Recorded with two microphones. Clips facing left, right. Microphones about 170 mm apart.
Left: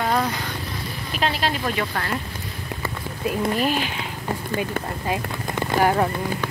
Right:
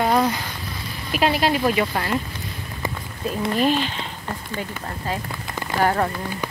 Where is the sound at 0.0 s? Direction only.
15° right (ahead or behind).